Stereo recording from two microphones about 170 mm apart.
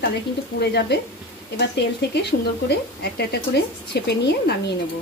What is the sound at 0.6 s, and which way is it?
A woman's voice, 75° left (ahead or behind).